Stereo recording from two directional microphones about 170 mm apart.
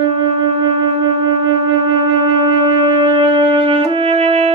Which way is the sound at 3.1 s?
30° right (ahead or behind).